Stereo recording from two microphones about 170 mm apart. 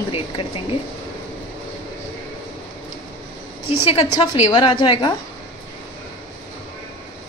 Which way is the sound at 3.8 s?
35° left (ahead or behind).